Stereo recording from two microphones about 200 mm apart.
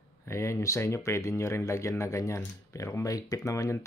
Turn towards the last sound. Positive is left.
turn(degrees=15)  # may be behind; listen again after turning